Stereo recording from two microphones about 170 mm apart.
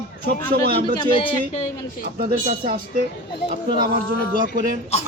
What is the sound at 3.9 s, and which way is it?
Speech, 55° right (ahead or behind).